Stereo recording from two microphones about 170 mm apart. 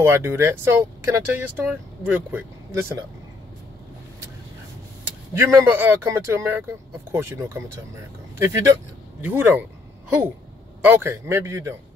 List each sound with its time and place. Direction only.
0.0 s speech: 15° right (ahead or behind)
5.4 s speech: 10° right (ahead or behind)